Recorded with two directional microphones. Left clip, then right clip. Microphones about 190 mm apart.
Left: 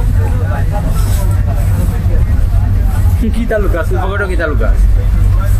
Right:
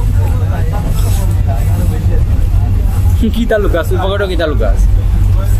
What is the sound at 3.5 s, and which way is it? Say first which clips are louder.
Speech: right 2 dB; 20° right (ahead or behind).